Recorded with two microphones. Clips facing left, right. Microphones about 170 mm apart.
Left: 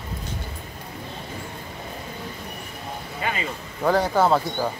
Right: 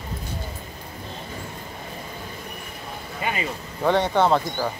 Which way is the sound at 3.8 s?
Centre (ahead or behind).